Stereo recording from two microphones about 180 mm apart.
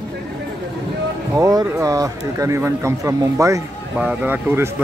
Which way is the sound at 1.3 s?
20° right (ahead or behind).